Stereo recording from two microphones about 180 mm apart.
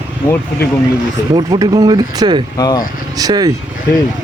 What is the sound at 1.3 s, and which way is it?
Speech, 20° right (ahead or behind).